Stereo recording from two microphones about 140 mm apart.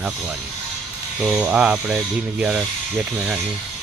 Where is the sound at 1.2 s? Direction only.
10° right (ahead or behind).